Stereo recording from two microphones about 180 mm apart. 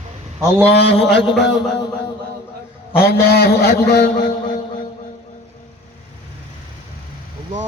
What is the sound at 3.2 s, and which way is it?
A man's voice, 60° left (ahead or behind).